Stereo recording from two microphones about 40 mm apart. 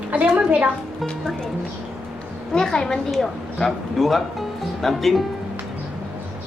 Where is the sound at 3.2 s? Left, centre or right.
Centre.